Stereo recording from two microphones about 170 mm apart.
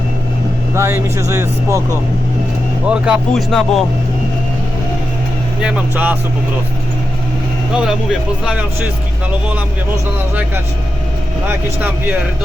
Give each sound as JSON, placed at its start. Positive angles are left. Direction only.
{"t": 0.7, "sound": "speech", "side_deg": -15}
{"t": 2.8, "sound": "speech", "side_deg": -5}
{"t": 5.6, "sound": "speech", "side_deg": -10}
{"t": 7.7, "sound": "speech", "side_deg": -5}
{"t": 11.4, "sound": "speech", "side_deg": -10}